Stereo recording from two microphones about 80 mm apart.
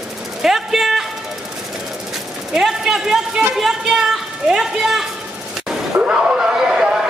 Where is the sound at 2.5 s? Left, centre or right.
Centre.